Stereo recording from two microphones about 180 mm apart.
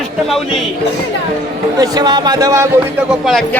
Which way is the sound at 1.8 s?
20° right (ahead or behind).